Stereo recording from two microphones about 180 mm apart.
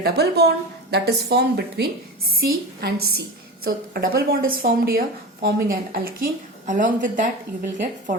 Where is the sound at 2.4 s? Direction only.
55° right (ahead or behind).